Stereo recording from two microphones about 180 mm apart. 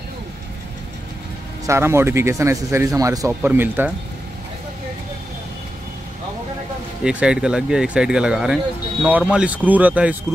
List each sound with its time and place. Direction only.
1.7 s a man's voice: 15° right (ahead or behind)
7.0 s a man's voice: 5° right (ahead or behind)